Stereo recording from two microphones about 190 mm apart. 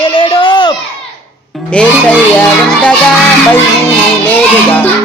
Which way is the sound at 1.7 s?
5° left (ahead or behind).